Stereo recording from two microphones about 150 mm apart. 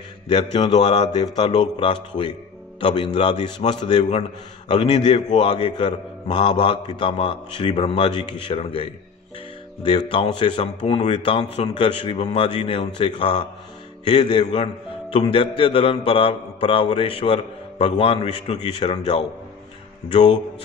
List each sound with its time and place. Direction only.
0.3 s a man's voice: 30° left (ahead or behind)
9.8 s a man's voice: 30° left (ahead or behind)
20.1 s a man's voice: 30° left (ahead or behind)